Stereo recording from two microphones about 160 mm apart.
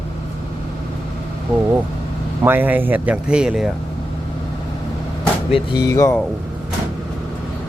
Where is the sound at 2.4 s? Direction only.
10° right (ahead or behind).